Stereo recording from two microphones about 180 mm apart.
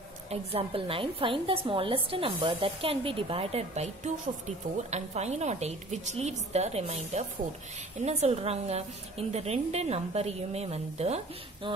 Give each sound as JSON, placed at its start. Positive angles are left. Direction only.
{"t": 0.3, "sound": "a woman's voice", "side_deg": -35}